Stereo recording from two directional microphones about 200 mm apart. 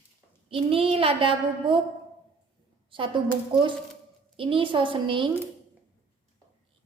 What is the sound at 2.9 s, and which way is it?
Speech, 25° right (ahead or behind).